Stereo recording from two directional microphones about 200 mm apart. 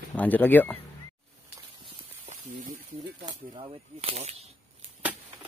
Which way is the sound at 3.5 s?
25° right (ahead or behind).